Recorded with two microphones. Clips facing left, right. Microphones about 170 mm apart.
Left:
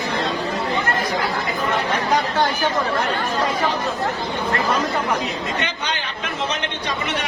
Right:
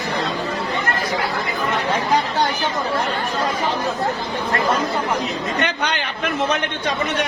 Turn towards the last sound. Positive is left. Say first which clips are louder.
# right 4 dB
turn(degrees=-60)  # may be behind; listen again after turning